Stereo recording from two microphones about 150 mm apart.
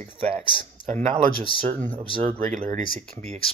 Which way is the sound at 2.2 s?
40° right (ahead or behind).